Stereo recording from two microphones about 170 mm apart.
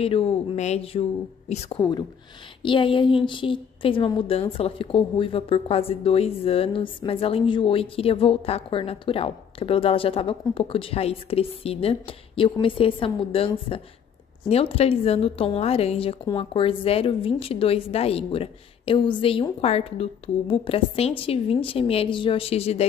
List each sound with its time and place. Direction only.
0.0 s a woman's voice: 35° left (ahead or behind)
1.8 s a woman's voice: 25° left (ahead or behind)